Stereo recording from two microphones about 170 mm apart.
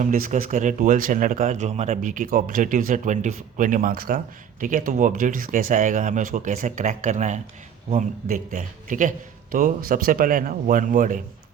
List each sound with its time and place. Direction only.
0.0 s speech: 50° right (ahead or behind)